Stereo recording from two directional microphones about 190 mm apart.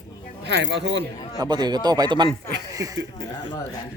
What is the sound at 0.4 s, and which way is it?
Speech, 70° right (ahead or behind).